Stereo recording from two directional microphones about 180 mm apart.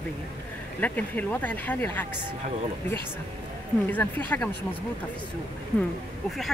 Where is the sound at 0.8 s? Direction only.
10° left (ahead or behind).